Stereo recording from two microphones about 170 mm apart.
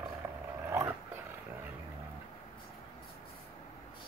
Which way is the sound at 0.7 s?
15° right (ahead or behind).